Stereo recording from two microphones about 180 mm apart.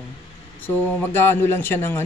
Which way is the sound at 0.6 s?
10° left (ahead or behind).